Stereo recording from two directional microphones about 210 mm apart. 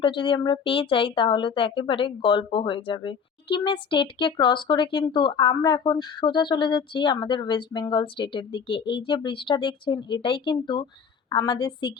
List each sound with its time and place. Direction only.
0.0 s speech: 20° left (ahead or behind)